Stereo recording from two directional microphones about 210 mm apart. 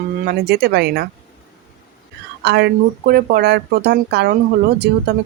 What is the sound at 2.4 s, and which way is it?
Speech, 55° right (ahead or behind).